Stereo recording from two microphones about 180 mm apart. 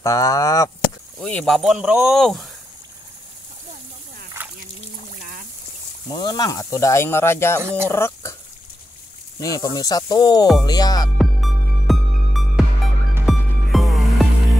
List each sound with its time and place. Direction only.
0.0 s speech: 20° left (ahead or behind)
1.2 s speech: 5° left (ahead or behind)
6.0 s speech: 20° left (ahead or behind)
7.6 s speech: 15° right (ahead or behind)
7.9 s a sound: 15° left (ahead or behind)
9.4 s speech: 20° left (ahead or behind)
11.1 s music: centre (ahead or behind)